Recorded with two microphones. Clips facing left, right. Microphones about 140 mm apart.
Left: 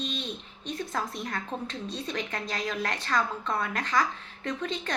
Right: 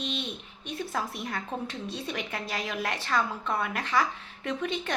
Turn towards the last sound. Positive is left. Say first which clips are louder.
# right 1 dB
turn(degrees=-10)  # may be behind; listen again after turning